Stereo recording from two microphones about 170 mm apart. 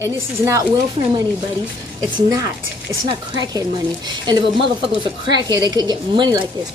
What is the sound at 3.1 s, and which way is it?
A woman's voice, 25° right (ahead or behind).